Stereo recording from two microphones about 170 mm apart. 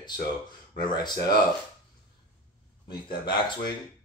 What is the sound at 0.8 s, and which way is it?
Speech, 25° left (ahead or behind).